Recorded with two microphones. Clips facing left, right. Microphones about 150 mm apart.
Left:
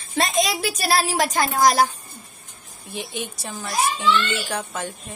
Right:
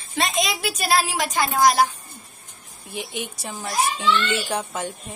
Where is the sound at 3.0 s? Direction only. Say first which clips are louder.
Even; 10° right (ahead or behind).